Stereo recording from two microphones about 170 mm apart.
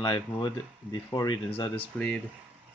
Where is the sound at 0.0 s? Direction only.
25° left (ahead or behind).